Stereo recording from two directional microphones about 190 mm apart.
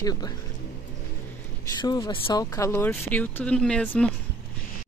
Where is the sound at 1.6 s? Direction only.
20° left (ahead or behind).